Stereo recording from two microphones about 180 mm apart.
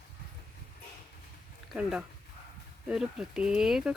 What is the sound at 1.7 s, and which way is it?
Speech, 5° right (ahead or behind).